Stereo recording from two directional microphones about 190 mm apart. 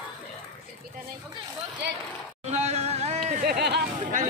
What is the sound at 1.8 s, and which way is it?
Speech, 65° right (ahead or behind).